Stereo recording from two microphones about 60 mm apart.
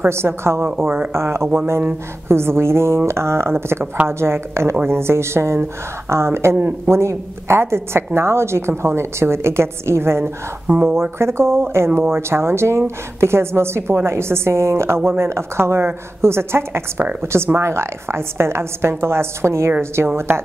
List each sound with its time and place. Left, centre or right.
0.1 s a woman's voice: right
3.8 s speech: right
4.1 s a woman's voice: right